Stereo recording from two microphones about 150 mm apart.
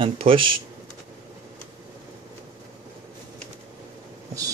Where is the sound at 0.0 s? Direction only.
35° right (ahead or behind).